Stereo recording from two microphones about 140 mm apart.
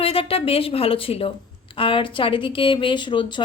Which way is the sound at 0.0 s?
40° left (ahead or behind).